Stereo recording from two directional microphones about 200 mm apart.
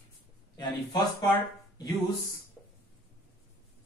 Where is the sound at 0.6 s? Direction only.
20° left (ahead or behind).